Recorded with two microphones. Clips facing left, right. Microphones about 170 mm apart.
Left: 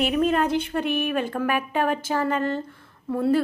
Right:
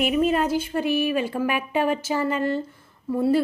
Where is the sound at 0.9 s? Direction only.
60° left (ahead or behind).